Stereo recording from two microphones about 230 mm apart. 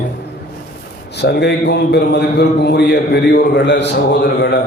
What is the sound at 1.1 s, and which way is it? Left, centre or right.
A man's voice, left.